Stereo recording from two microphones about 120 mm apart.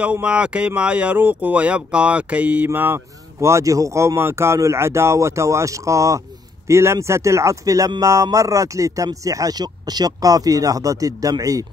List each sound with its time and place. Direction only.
0.0 s speech: 10° right (ahead or behind); by 11.6 s 30° right (ahead or behind)